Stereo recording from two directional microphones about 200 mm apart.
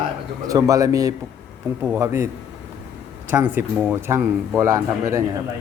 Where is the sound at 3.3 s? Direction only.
10° right (ahead or behind).